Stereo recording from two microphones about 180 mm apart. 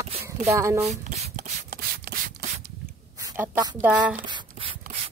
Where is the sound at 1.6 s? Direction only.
55° right (ahead or behind).